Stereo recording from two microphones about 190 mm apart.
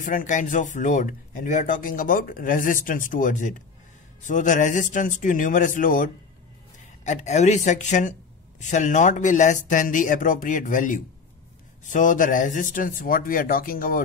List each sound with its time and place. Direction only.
0.0 s speech: 45° left (ahead or behind)